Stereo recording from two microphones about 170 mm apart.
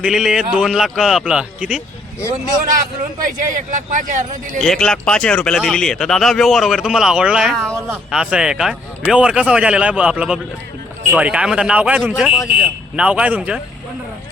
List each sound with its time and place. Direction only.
0.0 s speech: 5° right (ahead or behind)
2.6 s a man's voice: 50° right (ahead or behind)
4.6 s speech: 5° left (ahead or behind)
7.7 s speech: 15° right (ahead or behind)
8.1 s speech: 5° right (ahead or behind)